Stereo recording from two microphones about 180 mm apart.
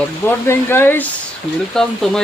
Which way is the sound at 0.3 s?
15° left (ahead or behind).